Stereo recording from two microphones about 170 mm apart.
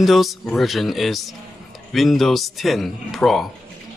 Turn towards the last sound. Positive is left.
turn(degrees=0)  # may be behind; listen again after turning